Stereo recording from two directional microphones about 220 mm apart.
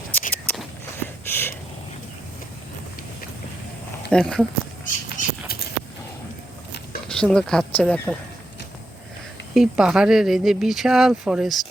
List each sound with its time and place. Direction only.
0.1 s a sound: 5° left (ahead or behind)
4.1 s speech: 5° left (ahead or behind)
4.9 s bird flight: 40° left (ahead or behind)
7.1 s speech: 5° left (ahead or behind)
9.6 s speech: 5° right (ahead or behind)